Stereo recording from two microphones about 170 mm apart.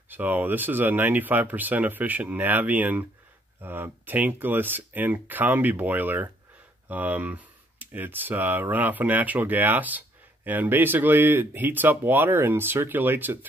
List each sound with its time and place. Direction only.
0.1 s speech: 10° right (ahead or behind)